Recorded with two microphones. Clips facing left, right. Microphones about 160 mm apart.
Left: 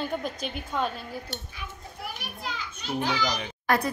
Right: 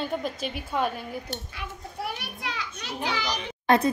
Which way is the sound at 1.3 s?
70° right (ahead or behind).